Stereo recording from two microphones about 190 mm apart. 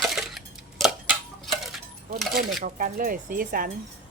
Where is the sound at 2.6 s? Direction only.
45° right (ahead or behind).